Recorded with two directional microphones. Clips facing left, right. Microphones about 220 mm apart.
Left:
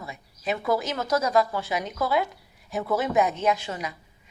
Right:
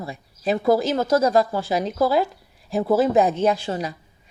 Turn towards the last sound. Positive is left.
turn(degrees=-35)  # may be behind; listen again after turning